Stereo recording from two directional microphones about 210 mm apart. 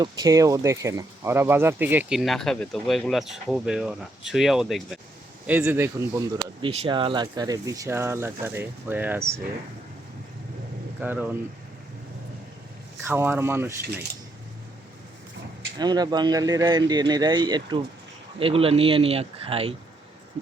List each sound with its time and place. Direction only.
0.0 s speech: 20° right (ahead or behind)
11.0 s speech: 10° right (ahead or behind)
13.1 s speech: 10° right (ahead or behind)
15.8 s speech: 20° right (ahead or behind)